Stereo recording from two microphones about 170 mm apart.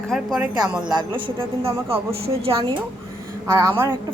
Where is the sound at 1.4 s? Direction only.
35° right (ahead or behind).